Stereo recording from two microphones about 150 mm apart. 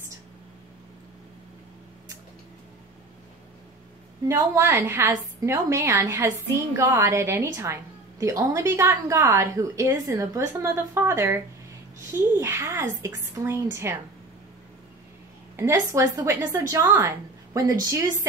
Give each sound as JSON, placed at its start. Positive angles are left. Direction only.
{"t": 4.3, "sound": "a woman's voice", "side_deg": -20}
{"t": 15.5, "sound": "a woman's voice", "side_deg": -20}